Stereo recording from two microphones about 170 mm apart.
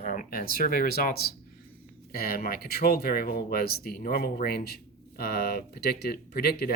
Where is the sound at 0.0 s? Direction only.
55° left (ahead or behind).